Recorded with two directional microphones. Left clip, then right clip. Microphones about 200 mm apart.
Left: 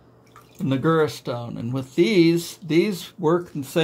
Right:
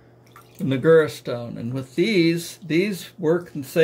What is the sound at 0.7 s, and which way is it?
Speech, 20° left (ahead or behind).